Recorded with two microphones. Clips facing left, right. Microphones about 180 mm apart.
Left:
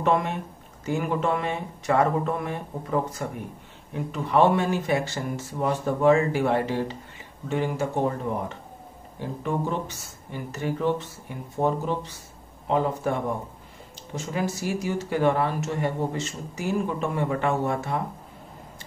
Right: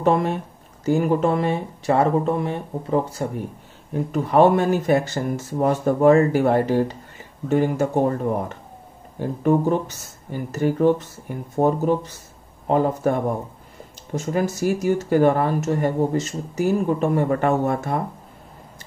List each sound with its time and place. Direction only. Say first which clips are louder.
0.0 s speech: right 4 dB; 35° right (ahead or behind)
3.9 s speech: right 5 dB; 45° right (ahead or behind)
9.2 s speech: right 9 dB; 45° right (ahead or behind)